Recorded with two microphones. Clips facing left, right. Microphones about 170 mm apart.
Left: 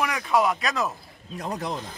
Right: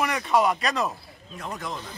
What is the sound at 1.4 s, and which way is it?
Speech, 35° left (ahead or behind).